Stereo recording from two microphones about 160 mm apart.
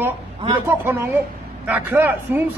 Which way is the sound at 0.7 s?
15° right (ahead or behind).